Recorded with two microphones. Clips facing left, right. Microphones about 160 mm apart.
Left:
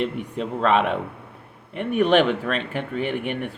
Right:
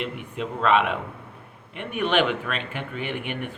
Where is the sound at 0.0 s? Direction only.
40° left (ahead or behind).